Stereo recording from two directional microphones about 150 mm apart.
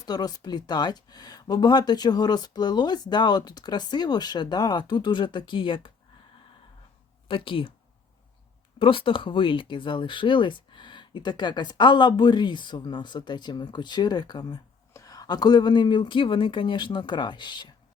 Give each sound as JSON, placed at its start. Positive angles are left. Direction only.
{"t": 0.0, "sound": "speech", "side_deg": 25}
{"t": 7.3, "sound": "speech", "side_deg": 35}
{"t": 8.8, "sound": "speech", "side_deg": 35}